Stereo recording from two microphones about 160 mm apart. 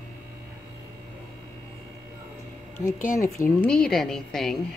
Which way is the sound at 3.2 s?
15° left (ahead or behind).